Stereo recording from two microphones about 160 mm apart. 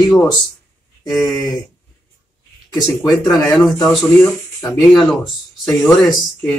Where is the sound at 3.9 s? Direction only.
Centre (ahead or behind).